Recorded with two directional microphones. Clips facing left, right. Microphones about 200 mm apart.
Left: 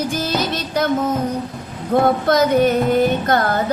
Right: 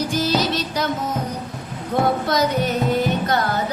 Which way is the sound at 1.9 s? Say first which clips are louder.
Left 5 dB; 50° left (ahead or behind).